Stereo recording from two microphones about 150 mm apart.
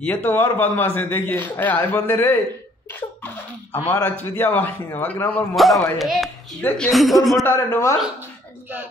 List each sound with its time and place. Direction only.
0.0 s a man's voice: 10° left (ahead or behind)
5.6 s speech: centre (ahead or behind)
7.4 s a man's voice: 15° left (ahead or behind)